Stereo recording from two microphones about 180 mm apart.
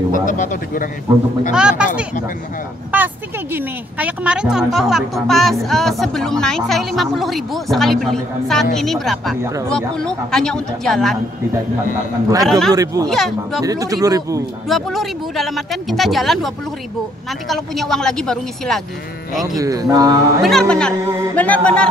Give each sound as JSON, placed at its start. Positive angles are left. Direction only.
{"t": 0.1, "sound": "speech", "side_deg": 45}
{"t": 1.5, "sound": "speech", "side_deg": -5}
{"t": 2.9, "sound": "speech", "side_deg": -10}
{"t": 12.4, "sound": "speech", "side_deg": 0}
{"t": 12.7, "sound": "speech", "side_deg": -20}
{"t": 13.0, "sound": "speech", "side_deg": 0}
{"t": 13.6, "sound": "speech", "side_deg": -20}
{"t": 14.7, "sound": "speech", "side_deg": 0}
{"t": 19.4, "sound": "speech", "side_deg": -20}
{"t": 20.4, "sound": "speech", "side_deg": 5}
{"t": 21.4, "sound": "a sound", "side_deg": 5}